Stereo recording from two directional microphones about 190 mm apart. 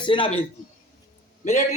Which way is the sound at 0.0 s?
25° left (ahead or behind).